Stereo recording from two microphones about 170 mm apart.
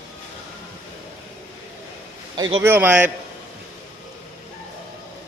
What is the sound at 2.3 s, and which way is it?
Speech, 25° right (ahead or behind).